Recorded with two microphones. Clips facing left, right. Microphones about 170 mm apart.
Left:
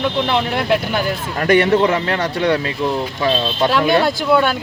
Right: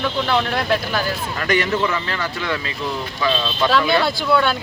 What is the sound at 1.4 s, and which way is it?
Speech, 50° left (ahead or behind).